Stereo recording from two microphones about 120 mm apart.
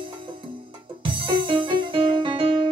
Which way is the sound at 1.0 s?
45° right (ahead or behind).